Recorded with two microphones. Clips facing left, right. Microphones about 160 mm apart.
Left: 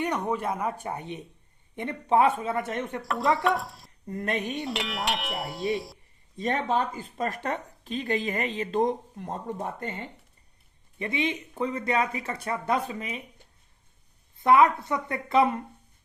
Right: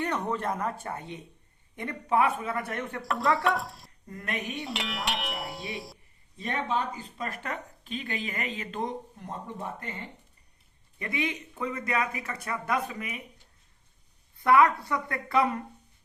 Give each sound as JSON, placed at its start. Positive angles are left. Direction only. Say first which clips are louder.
{"t": 0.0, "sound": "speech", "louder": "left 2 dB", "side_deg": 10}
{"t": 3.0, "sound": "a sound", "louder": "left 1 dB", "side_deg": 0}
{"t": 3.3, "sound": "speech", "louder": "left 2 dB", "side_deg": 0}
{"t": 4.1, "sound": "speech", "louder": "left 5 dB", "side_deg": 30}
{"t": 4.6, "sound": "a sound", "louder": "left 3 dB", "side_deg": 0}
{"t": 6.4, "sound": "speech", "louder": "left 4 dB", "side_deg": 40}
{"t": 10.9, "sound": "speech", "louder": "left 3 dB", "side_deg": 25}
{"t": 14.3, "sound": "speech", "louder": "left 2 dB", "side_deg": 20}